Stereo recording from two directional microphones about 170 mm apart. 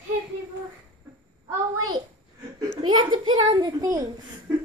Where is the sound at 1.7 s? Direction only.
20° right (ahead or behind).